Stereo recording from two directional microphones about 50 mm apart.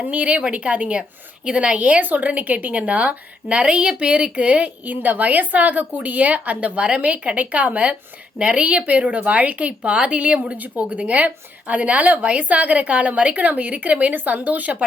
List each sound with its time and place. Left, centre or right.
0.0 s speech: right
4.8 s a woman's voice: right